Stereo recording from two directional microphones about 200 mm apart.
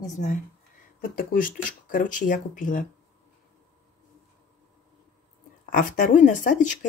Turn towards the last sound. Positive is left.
turn(degrees=40)  # may be behind; listen again after turning